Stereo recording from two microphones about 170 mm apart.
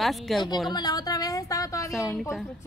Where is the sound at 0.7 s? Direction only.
25° left (ahead or behind).